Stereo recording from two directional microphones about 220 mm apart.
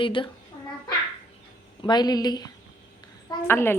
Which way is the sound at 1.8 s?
20° left (ahead or behind).